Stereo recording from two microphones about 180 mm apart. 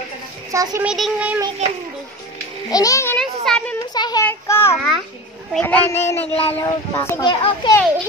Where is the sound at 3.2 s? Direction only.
Centre (ahead or behind).